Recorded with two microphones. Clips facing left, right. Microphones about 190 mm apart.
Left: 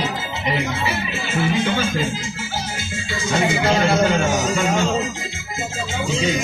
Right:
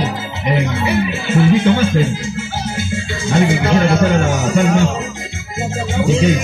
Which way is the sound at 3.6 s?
55° right (ahead or behind).